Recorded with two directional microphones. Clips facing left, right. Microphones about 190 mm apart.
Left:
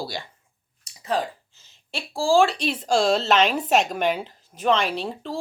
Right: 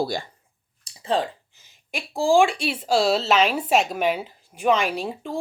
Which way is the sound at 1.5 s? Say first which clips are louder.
Right 1 dB; 10° right (ahead or behind).